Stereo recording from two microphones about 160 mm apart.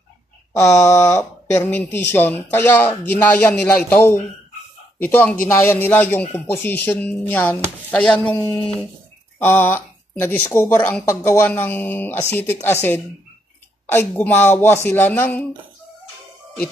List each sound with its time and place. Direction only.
0.5 s speech: 20° left (ahead or behind)